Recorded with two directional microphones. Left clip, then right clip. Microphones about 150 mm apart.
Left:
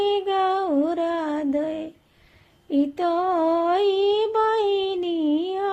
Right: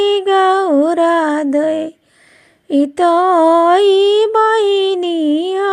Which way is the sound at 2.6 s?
45° right (ahead or behind).